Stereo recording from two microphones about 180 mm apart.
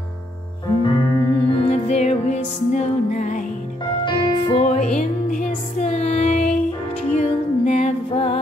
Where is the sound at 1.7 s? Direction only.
35° left (ahead or behind).